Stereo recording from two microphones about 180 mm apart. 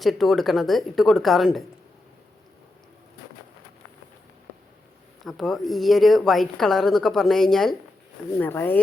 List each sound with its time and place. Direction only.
0.0 s a woman's voice: centre (ahead or behind)
5.2 s a woman's voice: centre (ahead or behind)